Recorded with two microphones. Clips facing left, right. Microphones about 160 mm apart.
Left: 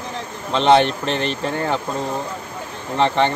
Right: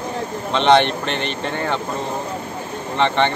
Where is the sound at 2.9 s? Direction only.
5° left (ahead or behind).